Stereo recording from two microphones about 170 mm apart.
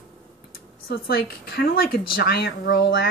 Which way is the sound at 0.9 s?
65° left (ahead or behind).